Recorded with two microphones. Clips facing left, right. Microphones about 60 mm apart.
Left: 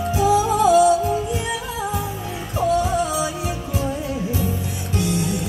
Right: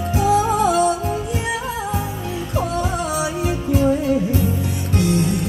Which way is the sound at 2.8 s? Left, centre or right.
Right.